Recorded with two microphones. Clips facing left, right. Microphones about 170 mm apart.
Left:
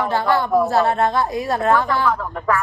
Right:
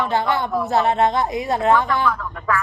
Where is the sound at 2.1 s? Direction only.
50° left (ahead or behind).